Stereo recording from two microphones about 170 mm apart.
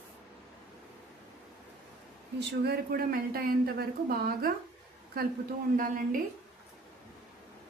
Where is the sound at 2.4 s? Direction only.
65° right (ahead or behind).